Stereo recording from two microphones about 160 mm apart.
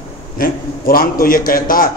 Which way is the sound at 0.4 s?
65° left (ahead or behind).